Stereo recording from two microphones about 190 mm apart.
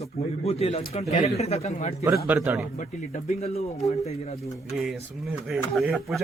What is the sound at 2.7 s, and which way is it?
Speech, 35° left (ahead or behind).